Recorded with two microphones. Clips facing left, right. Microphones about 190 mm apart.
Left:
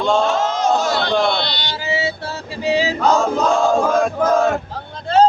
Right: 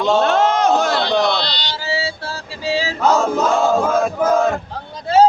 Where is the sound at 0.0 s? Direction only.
5° right (ahead or behind).